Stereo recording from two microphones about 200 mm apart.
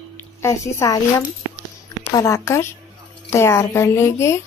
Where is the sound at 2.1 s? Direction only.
15° left (ahead or behind).